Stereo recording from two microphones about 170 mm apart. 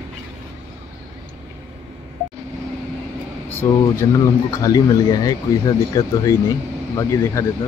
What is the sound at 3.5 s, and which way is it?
Speech, 20° left (ahead or behind).